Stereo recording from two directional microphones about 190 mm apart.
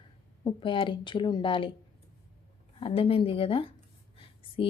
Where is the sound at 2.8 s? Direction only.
30° left (ahead or behind).